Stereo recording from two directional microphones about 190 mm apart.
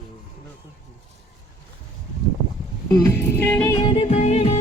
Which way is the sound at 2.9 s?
15° left (ahead or behind).